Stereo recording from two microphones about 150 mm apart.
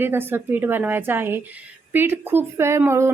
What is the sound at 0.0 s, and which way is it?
A woman's voice, 15° right (ahead or behind).